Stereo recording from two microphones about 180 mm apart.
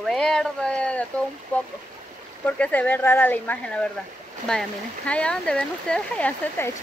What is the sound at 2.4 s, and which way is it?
Speech, 10° left (ahead or behind).